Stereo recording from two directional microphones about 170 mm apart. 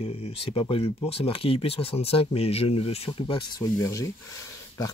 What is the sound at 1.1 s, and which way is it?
Speech, 35° left (ahead or behind).